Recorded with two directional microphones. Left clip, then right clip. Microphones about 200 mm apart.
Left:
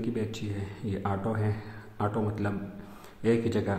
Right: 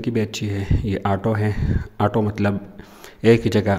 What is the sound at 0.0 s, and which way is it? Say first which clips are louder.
Speech: right 9 dB; 40° right (ahead or behind).